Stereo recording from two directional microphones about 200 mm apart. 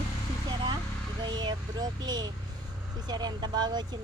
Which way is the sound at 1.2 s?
20° right (ahead or behind).